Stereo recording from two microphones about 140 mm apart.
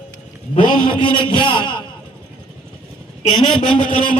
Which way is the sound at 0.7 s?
35° left (ahead or behind).